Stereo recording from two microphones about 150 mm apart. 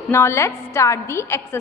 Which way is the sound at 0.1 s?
15° left (ahead or behind).